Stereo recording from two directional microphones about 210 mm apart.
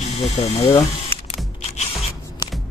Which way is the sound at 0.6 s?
15° left (ahead or behind).